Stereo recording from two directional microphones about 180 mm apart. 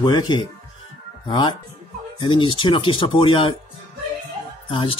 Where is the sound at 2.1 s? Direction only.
25° left (ahead or behind).